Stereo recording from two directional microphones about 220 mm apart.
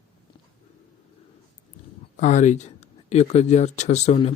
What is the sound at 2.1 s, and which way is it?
Speech, 35° left (ahead or behind).